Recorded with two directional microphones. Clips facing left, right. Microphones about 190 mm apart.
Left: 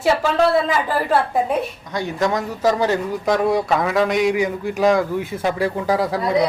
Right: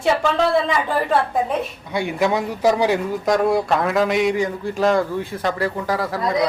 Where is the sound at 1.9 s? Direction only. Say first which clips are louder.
Right 3 dB; 10° right (ahead or behind).